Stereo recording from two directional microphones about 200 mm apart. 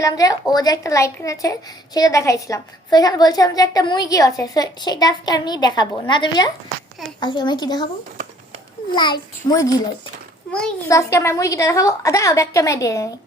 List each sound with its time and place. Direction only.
0.0 s a woman's voice: 15° left (ahead or behind)
8.9 s a woman's voice: 20° left (ahead or behind)